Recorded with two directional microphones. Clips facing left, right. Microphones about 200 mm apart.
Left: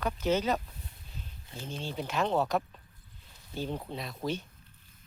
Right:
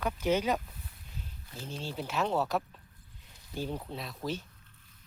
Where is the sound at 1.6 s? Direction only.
5° right (ahead or behind).